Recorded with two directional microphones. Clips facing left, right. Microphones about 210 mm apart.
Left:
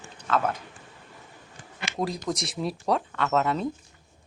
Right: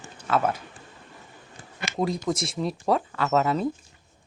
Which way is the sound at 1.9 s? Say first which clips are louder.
Right 3 dB; centre (ahead or behind).